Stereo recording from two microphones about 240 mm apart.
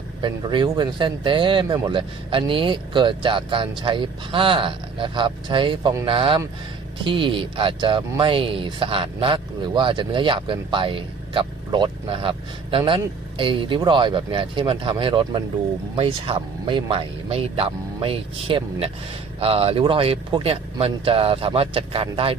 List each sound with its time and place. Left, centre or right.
0.2 s speech: centre